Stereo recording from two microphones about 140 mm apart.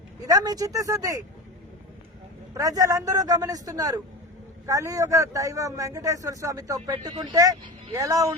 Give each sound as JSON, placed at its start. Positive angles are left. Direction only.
{"t": 0.3, "sound": "speech", "side_deg": -25}
{"t": 2.6, "sound": "speech", "side_deg": -25}